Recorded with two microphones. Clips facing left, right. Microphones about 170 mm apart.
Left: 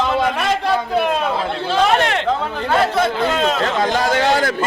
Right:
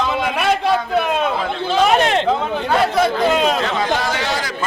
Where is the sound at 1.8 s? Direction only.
20° right (ahead or behind).